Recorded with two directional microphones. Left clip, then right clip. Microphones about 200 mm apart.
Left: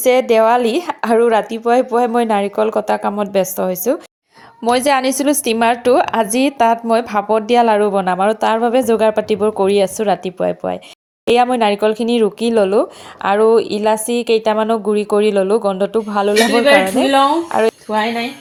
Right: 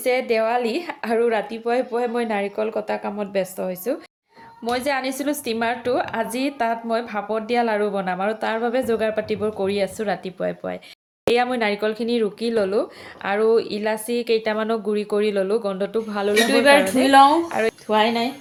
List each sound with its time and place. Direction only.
0.0 s speech: 40° left (ahead or behind)